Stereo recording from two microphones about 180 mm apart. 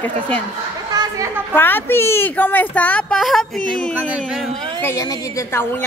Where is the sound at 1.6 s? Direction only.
10° left (ahead or behind).